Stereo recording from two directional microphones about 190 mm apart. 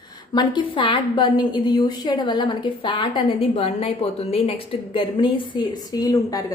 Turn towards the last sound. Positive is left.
turn(degrees=20)  # may be behind; listen again after turning